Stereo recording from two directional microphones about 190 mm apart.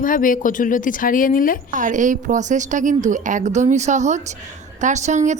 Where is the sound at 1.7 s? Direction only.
40° right (ahead or behind).